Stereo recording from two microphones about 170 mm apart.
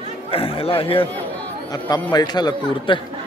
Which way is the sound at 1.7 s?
20° left (ahead or behind).